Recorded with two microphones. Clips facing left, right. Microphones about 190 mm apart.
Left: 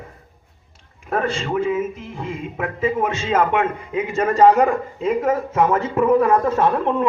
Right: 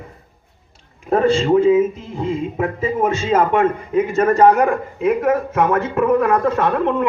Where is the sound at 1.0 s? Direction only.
25° right (ahead or behind).